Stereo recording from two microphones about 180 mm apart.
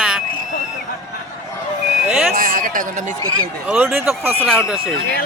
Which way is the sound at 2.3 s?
50° right (ahead or behind).